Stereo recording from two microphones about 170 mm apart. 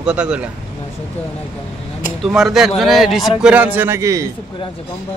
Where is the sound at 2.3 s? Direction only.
Centre (ahead or behind); by 4.3 s 20° right (ahead or behind).